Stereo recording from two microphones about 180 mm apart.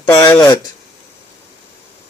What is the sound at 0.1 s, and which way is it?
Speech, 20° left (ahead or behind).